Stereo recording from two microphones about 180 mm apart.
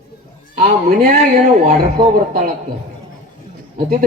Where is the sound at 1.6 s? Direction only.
40° right (ahead or behind).